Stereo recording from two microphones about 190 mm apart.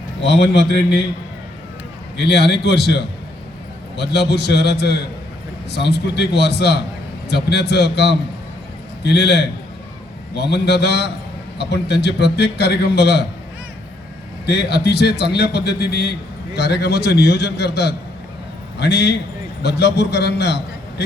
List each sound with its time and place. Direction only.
0.3 s a man's voice: 60° left (ahead or behind)
2.1 s a man's voice: 60° left (ahead or behind)
14.4 s a man's voice: 60° left (ahead or behind)